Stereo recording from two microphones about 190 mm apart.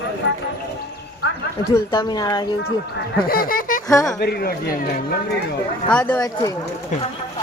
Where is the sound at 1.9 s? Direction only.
20° left (ahead or behind).